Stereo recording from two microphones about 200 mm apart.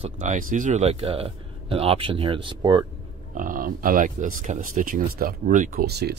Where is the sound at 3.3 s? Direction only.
45° right (ahead or behind).